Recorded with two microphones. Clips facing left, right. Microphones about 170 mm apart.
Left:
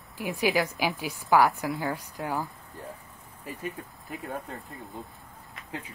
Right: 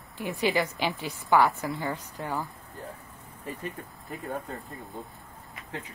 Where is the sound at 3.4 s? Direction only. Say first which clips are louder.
Even; 5° left (ahead or behind).